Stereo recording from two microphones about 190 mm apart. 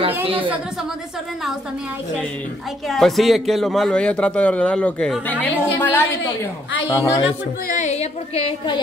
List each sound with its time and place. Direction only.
0.2 s a woman's voice: 30° right (ahead or behind)
2.9 s a man's voice: centre (ahead or behind); by 7.2 s 15° left (ahead or behind)
7.6 s a woman's voice: 40° left (ahead or behind)